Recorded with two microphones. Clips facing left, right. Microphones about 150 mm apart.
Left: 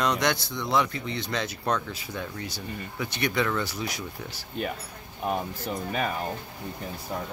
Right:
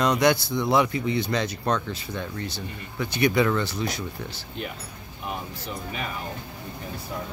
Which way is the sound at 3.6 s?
10° left (ahead or behind).